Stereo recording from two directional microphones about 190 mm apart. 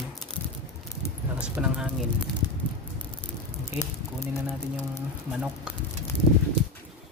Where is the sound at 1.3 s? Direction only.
5° right (ahead or behind).